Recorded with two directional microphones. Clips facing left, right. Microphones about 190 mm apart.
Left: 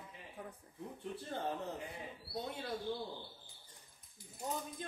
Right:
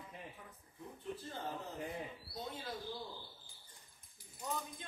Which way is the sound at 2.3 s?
70° left (ahead or behind).